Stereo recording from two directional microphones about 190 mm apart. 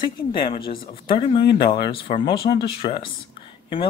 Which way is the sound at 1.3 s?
25° left (ahead or behind).